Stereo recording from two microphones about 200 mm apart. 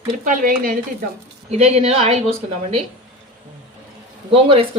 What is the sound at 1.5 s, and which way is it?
Speech, 30° right (ahead or behind).